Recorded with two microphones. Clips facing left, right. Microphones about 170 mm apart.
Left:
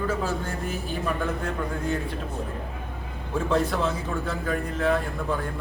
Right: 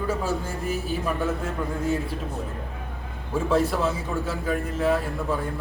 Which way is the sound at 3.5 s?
5° right (ahead or behind).